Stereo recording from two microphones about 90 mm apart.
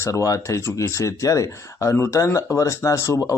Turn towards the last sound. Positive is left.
turn(degrees=35)  # may be behind; listen again after turning